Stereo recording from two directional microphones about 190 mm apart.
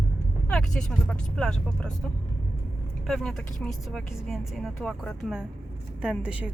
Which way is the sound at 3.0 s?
Centre (ahead or behind).